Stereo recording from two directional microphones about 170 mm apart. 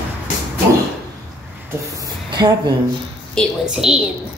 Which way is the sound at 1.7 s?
20° right (ahead or behind).